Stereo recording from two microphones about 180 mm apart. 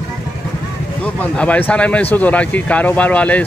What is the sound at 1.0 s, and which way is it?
Speech, 5° left (ahead or behind).